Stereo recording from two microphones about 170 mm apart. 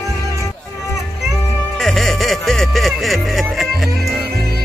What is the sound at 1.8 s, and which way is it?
Music, centre (ahead or behind).